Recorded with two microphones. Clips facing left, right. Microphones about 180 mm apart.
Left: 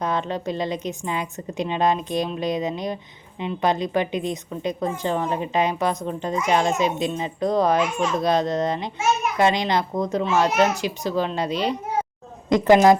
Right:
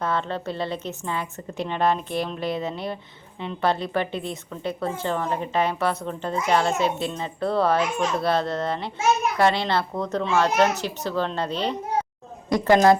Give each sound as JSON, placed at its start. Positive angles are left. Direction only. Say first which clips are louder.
{"t": 0.0, "sound": "a woman's voice", "louder": "left 1 dB", "side_deg": 15}